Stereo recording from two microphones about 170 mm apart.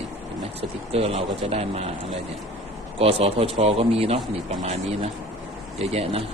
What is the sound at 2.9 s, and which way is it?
A man's voice, 35° right (ahead or behind).